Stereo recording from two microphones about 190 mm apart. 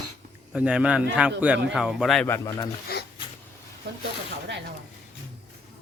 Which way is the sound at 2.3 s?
15° left (ahead or behind).